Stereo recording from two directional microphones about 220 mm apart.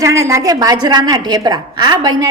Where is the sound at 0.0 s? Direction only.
15° right (ahead or behind).